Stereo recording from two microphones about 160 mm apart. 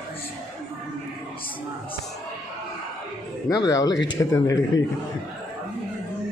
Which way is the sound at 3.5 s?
25° left (ahead or behind).